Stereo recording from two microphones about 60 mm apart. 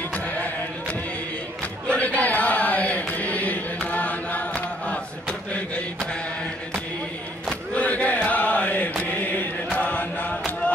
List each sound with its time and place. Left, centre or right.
0.1 s a sound: left
1.9 s chant: left
7.7 s chant: left